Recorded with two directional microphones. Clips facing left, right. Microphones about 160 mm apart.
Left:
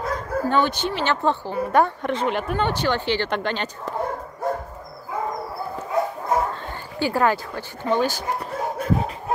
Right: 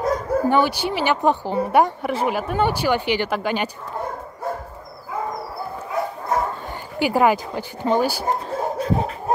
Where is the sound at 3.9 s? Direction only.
90° left.